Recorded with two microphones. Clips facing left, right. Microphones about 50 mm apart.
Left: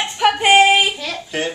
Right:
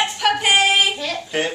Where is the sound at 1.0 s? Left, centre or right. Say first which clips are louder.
Right 1 dB; centre.